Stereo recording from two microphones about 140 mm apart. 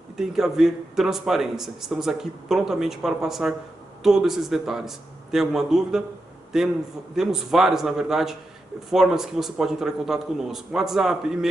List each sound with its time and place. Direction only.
0.3 s speech: 5° right (ahead or behind)